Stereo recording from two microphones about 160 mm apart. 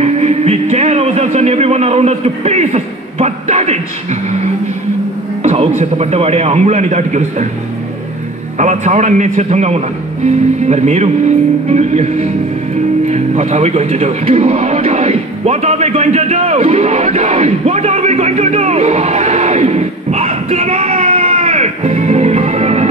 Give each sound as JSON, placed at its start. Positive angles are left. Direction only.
{"t": 0.0, "sound": "speech", "side_deg": -45}
{"t": 5.4, "sound": "a sound", "side_deg": -45}
{"t": 5.8, "sound": "a man's voice", "side_deg": -40}
{"t": 8.5, "sound": "a man's voice", "side_deg": -50}
{"t": 13.0, "sound": "music", "side_deg": -45}